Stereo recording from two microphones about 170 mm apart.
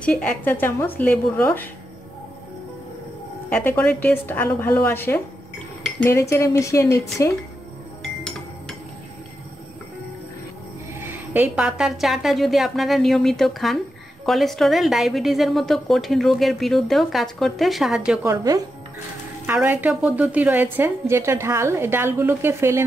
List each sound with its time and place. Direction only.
0.0 s a woman's voice: 5° left (ahead or behind)
3.4 s a woman's voice: 10° left (ahead or behind)
11.0 s a woman's voice: 10° right (ahead or behind)
18.2 s a woman's voice: 20° right (ahead or behind)